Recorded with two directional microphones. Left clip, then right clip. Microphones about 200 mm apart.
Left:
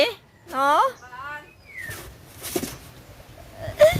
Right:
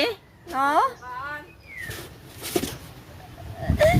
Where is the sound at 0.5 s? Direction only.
15° left (ahead or behind).